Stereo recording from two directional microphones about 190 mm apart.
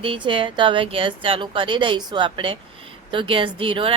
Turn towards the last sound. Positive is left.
turn(degrees=-30)  # may be behind; listen again after turning